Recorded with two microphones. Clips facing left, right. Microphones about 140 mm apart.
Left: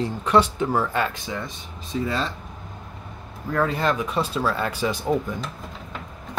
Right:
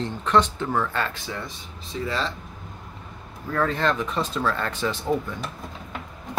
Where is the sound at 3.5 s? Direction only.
10° left (ahead or behind).